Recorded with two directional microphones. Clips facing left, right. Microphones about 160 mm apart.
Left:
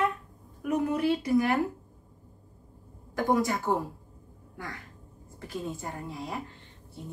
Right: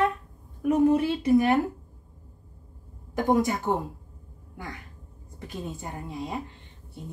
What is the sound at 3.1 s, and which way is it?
Speech, 20° right (ahead or behind).